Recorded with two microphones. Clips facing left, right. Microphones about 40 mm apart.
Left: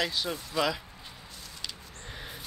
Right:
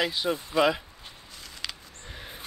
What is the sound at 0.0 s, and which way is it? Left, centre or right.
Speech, right.